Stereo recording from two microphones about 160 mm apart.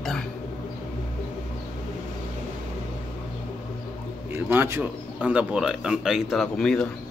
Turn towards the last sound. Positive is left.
turn(degrees=5)  # may be behind; listen again after turning